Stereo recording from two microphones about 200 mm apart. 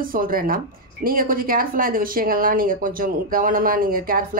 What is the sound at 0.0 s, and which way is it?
Speech, 45° right (ahead or behind).